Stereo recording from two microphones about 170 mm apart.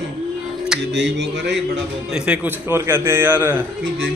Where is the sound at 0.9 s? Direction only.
90° right.